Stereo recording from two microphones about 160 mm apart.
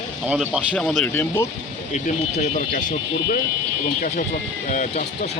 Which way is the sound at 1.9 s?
50° left (ahead or behind).